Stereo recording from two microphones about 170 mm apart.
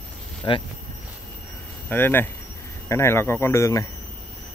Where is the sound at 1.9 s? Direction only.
10° left (ahead or behind).